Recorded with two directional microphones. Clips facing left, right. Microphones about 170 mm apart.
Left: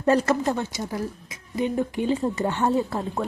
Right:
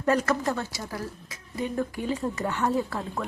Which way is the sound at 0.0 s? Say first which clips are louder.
Left 4 dB; 30° left (ahead or behind).